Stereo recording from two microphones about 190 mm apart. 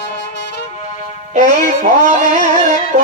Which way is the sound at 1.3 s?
45° right (ahead or behind).